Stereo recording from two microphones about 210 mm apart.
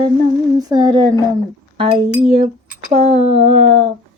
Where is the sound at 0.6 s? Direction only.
20° right (ahead or behind).